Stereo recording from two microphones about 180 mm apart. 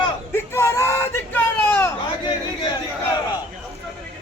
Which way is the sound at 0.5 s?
15° left (ahead or behind).